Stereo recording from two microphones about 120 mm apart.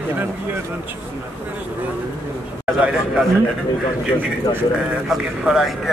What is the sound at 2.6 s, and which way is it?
Speech, 10° right (ahead or behind).